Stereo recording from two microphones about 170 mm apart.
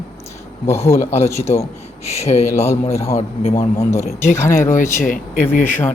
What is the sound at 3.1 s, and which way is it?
Speech, 40° left (ahead or behind).